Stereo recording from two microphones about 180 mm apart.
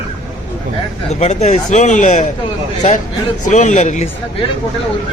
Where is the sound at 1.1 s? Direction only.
35° left (ahead or behind).